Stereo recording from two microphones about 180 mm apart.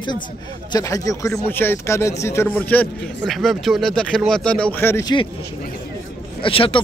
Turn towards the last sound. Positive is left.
turn(degrees=30)  # may be behind; listen again after turning